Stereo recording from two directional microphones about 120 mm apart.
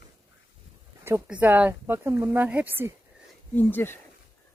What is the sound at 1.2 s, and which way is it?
Speech, 10° right (ahead or behind).